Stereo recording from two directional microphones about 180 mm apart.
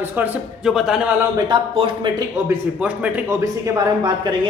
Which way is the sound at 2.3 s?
5° right (ahead or behind).